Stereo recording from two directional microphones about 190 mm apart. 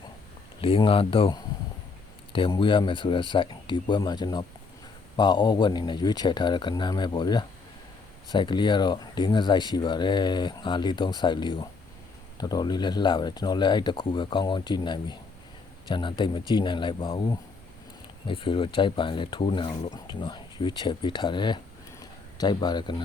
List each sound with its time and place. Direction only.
0.6 s speech: 30° left (ahead or behind)